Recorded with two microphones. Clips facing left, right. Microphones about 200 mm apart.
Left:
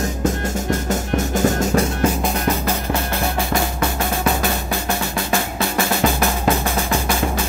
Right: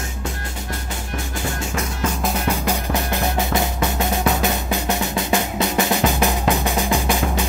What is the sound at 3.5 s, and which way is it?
Drum, 20° right (ahead or behind).